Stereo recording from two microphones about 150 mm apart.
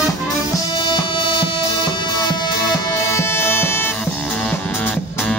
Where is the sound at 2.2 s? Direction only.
25° left (ahead or behind).